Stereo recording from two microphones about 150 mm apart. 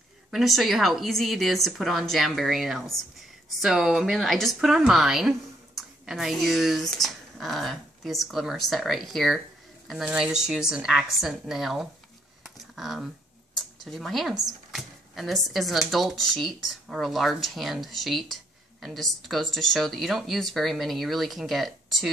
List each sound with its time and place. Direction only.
0.3 s speech: centre (ahead or behind)
12.4 s computer keyboard: centre (ahead or behind)
13.6 s speech: centre (ahead or behind)